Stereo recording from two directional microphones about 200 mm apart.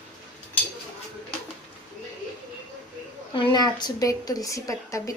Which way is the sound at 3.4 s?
25° left (ahead or behind).